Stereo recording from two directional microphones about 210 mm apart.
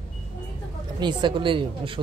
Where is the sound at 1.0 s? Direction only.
20° right (ahead or behind).